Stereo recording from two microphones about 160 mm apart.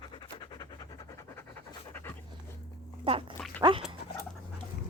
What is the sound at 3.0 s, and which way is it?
Dog, 35° right (ahead or behind).